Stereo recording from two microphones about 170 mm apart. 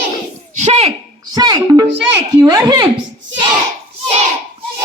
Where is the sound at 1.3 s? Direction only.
25° right (ahead or behind).